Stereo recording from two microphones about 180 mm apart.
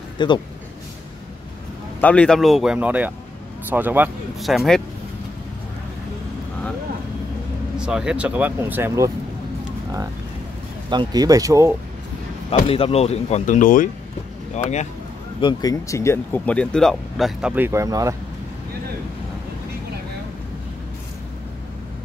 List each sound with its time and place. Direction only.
0.2 s speech: 25° left (ahead or behind)
2.0 s speech: 10° left (ahead or behind); by 4.1 s 10° right (ahead or behind)
4.4 s speech: centre (ahead or behind)
7.7 s speech: 5° right (ahead or behind)
10.9 s speech: 25° right (ahead or behind)
12.6 s speech: 30° left (ahead or behind)
15.4 s speech: 20° left (ahead or behind); by 18.1 s 20° right (ahead or behind)